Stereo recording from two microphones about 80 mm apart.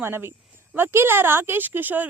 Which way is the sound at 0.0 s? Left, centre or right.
Right.